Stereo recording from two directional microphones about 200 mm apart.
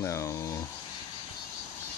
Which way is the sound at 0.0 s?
15° left (ahead or behind).